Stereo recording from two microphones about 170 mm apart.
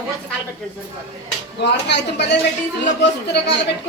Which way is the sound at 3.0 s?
80° left.